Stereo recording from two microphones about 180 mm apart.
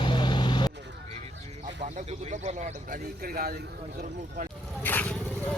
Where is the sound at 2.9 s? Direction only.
55° right (ahead or behind).